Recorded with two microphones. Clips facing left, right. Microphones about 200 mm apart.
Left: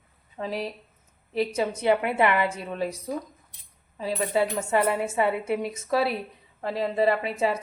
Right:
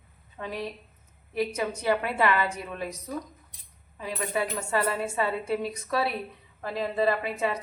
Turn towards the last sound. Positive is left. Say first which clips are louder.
# left 3 dB
turn(degrees=30)  # may be behind; listen again after turning